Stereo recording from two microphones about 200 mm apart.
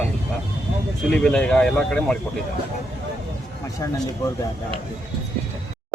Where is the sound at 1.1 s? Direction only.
5° left (ahead or behind).